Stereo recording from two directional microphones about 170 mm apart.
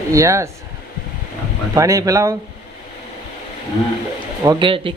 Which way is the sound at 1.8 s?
20° right (ahead or behind).